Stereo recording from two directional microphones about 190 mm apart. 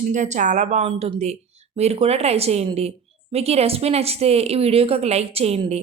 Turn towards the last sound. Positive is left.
turn(degrees=-30)  # may be behind; listen again after turning